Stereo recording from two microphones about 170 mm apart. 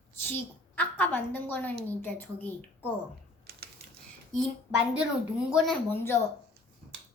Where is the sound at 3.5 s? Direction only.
70° right (ahead or behind).